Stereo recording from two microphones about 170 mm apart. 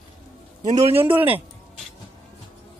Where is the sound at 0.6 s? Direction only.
40° right (ahead or behind).